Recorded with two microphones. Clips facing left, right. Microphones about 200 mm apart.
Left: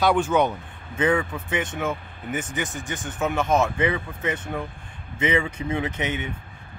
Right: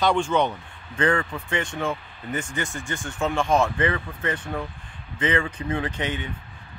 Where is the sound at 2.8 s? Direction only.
20° left (ahead or behind).